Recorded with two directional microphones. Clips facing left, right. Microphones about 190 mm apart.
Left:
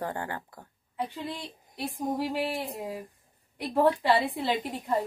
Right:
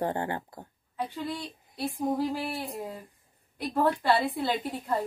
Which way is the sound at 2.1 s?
20° left (ahead or behind).